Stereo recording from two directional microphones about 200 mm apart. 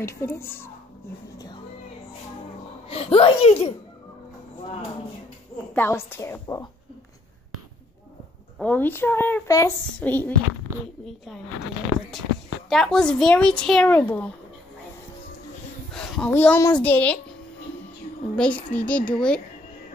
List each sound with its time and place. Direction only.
0.0 s speech: 15° left (ahead or behind)
2.9 s a child's voice: 30° left (ahead or behind)
5.8 s speech: 10° left (ahead or behind)
8.5 s speech: 10° left (ahead or behind)
12.6 s speech: centre (ahead or behind)
15.9 s speech: 5° left (ahead or behind)
18.3 s speech: 5° left (ahead or behind)